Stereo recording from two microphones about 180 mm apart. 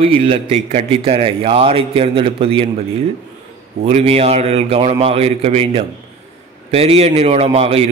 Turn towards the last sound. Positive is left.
turn(degrees=-35)  # may be behind; listen again after turning